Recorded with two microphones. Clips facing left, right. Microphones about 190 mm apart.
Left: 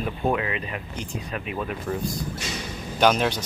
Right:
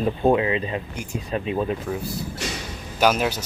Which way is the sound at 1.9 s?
5° right (ahead or behind).